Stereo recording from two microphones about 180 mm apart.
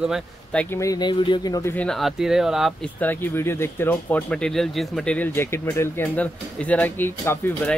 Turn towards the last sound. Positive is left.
turn(degrees=10)  # may be behind; listen again after turning